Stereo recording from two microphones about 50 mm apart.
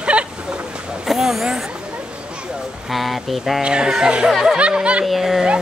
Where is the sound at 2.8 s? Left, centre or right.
Centre.